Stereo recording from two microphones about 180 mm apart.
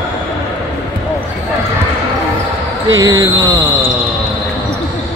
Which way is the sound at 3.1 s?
20° right (ahead or behind).